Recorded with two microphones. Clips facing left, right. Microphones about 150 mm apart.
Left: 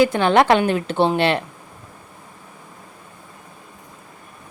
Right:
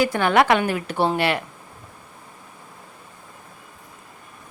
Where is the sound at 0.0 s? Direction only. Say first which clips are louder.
Left 3 dB; 20° left (ahead or behind).